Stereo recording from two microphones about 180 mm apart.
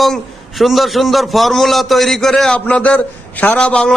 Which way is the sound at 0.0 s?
Centre (ahead or behind).